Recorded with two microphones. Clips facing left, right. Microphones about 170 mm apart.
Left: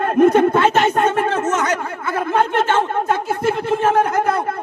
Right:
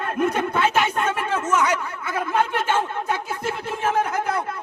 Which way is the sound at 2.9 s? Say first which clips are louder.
Left 7 dB; 60° left (ahead or behind).